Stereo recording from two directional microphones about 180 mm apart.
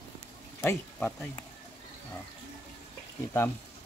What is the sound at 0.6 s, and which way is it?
Speech, 10° left (ahead or behind).